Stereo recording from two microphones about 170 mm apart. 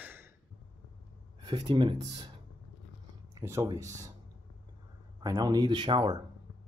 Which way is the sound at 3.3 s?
15° right (ahead or behind).